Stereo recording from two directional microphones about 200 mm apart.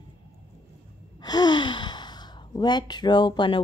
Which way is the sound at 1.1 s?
20° left (ahead or behind).